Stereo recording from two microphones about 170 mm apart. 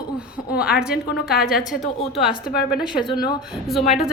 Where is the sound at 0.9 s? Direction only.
65° left (ahead or behind).